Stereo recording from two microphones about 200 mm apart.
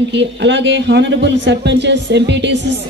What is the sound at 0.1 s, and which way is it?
A man's voice, 65° right (ahead or behind).